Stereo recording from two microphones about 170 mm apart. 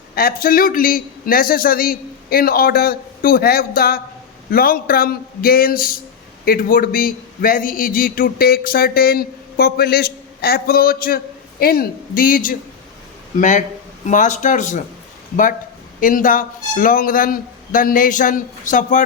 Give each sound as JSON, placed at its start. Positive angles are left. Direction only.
{"t": 0.1, "sound": "a man's voice", "side_deg": 60}
{"t": 16.0, "sound": "a man's voice", "side_deg": 55}